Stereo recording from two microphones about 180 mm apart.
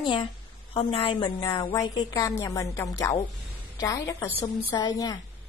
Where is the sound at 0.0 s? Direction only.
25° left (ahead or behind).